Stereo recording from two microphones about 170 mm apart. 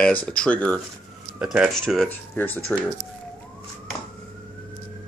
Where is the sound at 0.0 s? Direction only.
5° left (ahead or behind).